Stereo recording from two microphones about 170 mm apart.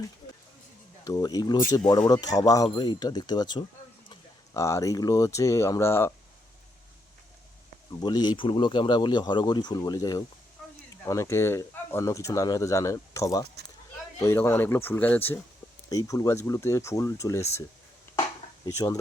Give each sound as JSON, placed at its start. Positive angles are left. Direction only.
{"t": 1.0, "sound": "speech", "side_deg": 20}
{"t": 8.0, "sound": "speech", "side_deg": 25}
{"t": 18.6, "sound": "speech", "side_deg": 20}